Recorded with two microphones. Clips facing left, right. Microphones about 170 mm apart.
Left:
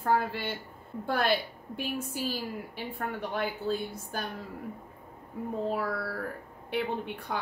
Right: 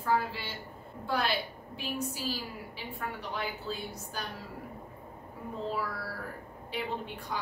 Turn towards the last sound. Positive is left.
turn(degrees=60)  # may be behind; listen again after turning